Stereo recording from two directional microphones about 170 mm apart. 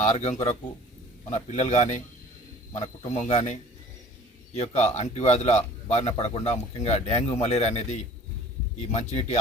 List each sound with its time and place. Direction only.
0.0 s a man's voice: 40° left (ahead or behind)
3.1 s a man's voice: 40° left (ahead or behind)